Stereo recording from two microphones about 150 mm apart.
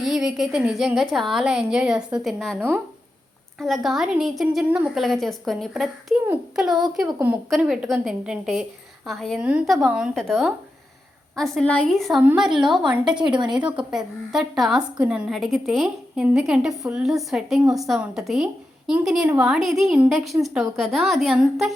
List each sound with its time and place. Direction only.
0.0 s a woman's voice: 5° right (ahead or behind)
2.6 s speech: 15° right (ahead or behind)
3.6 s a woman's voice: centre (ahead or behind)
12.2 s speech: 15° right (ahead or behind)
12.5 s a woman's voice: 5° right (ahead or behind)
13.2 s speech: 30° right (ahead or behind)
13.5 s a woman's voice: 5° right (ahead or behind)